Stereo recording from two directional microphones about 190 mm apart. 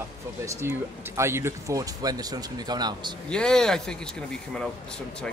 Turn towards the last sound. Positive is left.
turn(degrees=5)  # may be behind; listen again after turning